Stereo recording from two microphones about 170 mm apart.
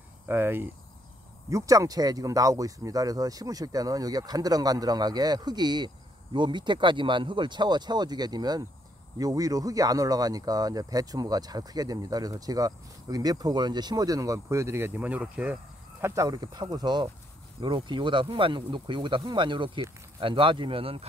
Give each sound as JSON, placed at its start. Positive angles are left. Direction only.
{"t": 0.3, "sound": "speech", "side_deg": -15}
{"t": 16.0, "sound": "speech", "side_deg": -20}